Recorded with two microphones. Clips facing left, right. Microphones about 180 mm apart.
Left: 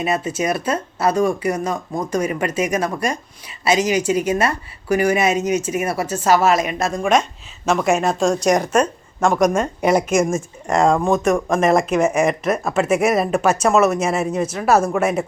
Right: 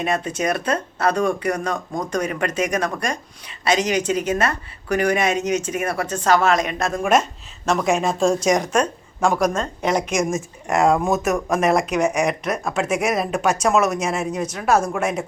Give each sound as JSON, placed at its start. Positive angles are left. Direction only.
{"t": 0.0, "sound": "speech", "side_deg": 5}
{"t": 9.2, "sound": "a woman's voice", "side_deg": -10}
{"t": 9.5, "sound": "speech", "side_deg": 10}